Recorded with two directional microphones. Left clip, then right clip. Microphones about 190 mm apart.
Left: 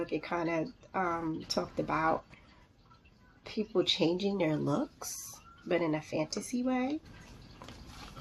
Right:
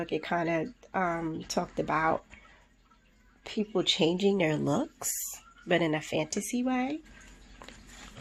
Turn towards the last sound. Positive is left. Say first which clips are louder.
# right 3 dB
turn(degrees=-45)  # may be behind; listen again after turning